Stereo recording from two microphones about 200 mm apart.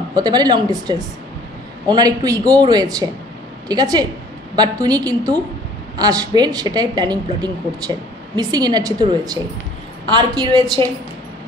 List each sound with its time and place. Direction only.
0.1 s a woman's voice: 20° right (ahead or behind)
10.0 s a woman's voice: 20° right (ahead or behind)